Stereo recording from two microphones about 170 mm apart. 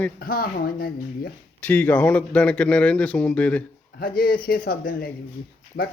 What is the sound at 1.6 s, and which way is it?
Speech, 10° left (ahead or behind).